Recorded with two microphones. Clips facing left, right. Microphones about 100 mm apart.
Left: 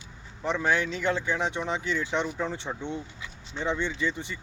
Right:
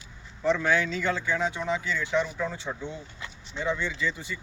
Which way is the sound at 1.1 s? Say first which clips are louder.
Even; 20° left (ahead or behind).